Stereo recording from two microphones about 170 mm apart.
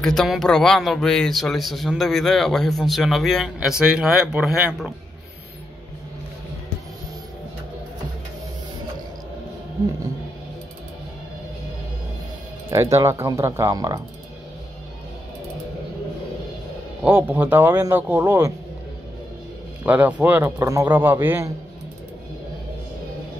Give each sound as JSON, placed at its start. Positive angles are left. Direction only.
{"t": 0.0, "sound": "speech", "side_deg": 0}
{"t": 12.6, "sound": "a man's voice", "side_deg": -15}
{"t": 17.0, "sound": "a man's voice", "side_deg": -10}
{"t": 19.8, "sound": "a man's voice", "side_deg": -10}